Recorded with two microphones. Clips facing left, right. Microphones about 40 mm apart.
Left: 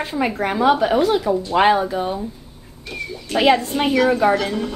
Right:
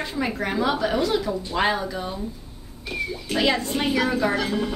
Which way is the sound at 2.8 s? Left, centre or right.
Centre.